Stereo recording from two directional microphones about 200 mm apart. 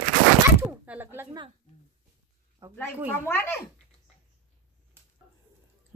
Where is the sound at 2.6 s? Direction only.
15° right (ahead or behind).